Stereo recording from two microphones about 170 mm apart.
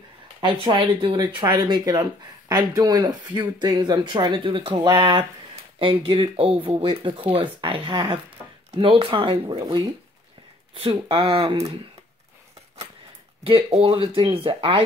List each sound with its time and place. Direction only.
0.4 s speech: 25° right (ahead or behind)
10.7 s speech: 30° right (ahead or behind)
13.5 s speech: 35° right (ahead or behind)